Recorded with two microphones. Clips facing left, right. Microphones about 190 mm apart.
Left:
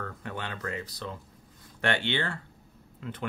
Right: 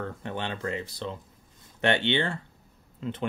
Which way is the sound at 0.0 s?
25° right (ahead or behind).